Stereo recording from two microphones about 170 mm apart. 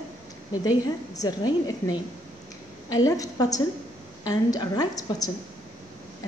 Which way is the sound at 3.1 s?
20° left (ahead or behind).